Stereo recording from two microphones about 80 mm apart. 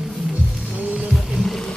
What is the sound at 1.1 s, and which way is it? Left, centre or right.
Music, centre.